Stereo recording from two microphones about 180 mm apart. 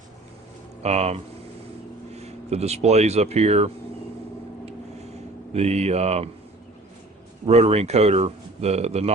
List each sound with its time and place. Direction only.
0.8 s speech: 35° right (ahead or behind)
5.5 s speech: 35° right (ahead or behind)
7.4 s speech: 35° right (ahead or behind)